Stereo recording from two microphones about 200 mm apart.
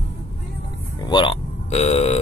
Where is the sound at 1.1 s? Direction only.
25° left (ahead or behind).